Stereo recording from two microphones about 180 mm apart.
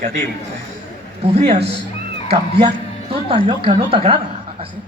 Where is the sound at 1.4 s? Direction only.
35° right (ahead or behind).